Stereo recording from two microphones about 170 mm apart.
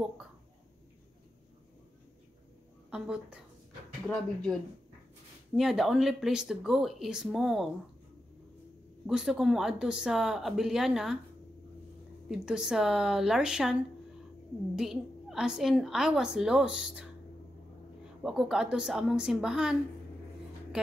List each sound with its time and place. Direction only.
2.9 s a woman's voice: 5° right (ahead or behind)
5.6 s a woman's voice: centre (ahead or behind)
9.0 s a woman's voice: 5° right (ahead or behind)
12.3 s a woman's voice: 5° right (ahead or behind)
14.8 s a woman's voice: centre (ahead or behind)
18.2 s a woman's voice: centre (ahead or behind)